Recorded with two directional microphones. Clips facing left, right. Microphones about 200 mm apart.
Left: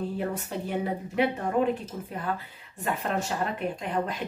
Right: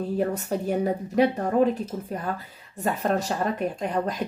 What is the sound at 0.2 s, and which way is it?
Speech, 40° right (ahead or behind).